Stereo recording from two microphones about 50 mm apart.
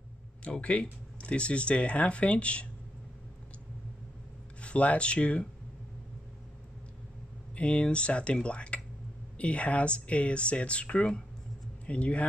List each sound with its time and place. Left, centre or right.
0.4 s speech: left
4.6 s speech: left
7.5 s speech: left